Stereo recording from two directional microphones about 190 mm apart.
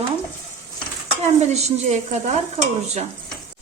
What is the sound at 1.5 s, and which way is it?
Speech, 35° right (ahead or behind).